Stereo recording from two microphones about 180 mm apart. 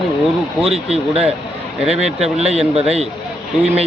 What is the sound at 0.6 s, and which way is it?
Speech, 35° right (ahead or behind).